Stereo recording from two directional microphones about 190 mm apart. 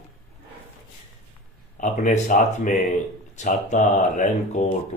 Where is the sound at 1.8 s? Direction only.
40° left (ahead or behind).